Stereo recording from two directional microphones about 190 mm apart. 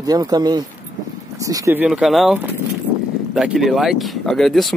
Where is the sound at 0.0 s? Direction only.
20° right (ahead or behind).